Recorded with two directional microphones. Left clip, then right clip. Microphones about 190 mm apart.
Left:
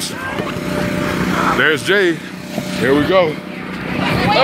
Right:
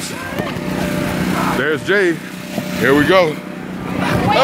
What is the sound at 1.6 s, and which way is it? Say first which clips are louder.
Speech: left 3 dB; 50° left (ahead or behind).